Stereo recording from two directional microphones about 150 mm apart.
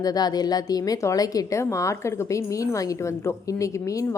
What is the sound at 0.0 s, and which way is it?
A woman's voice, 25° left (ahead or behind).